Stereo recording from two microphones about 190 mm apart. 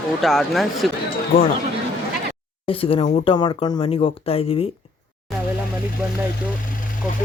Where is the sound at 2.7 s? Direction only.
30° left (ahead or behind).